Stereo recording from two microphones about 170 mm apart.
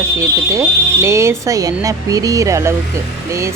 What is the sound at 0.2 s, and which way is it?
Speech, 15° right (ahead or behind).